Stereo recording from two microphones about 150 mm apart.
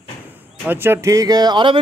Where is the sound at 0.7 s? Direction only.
15° right (ahead or behind); by 1.8 s 30° right (ahead or behind).